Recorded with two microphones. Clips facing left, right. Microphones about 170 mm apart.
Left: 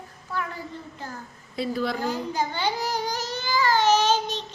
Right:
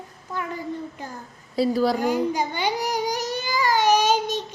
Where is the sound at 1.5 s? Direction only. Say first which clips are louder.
Right 6 dB; 35° right (ahead or behind).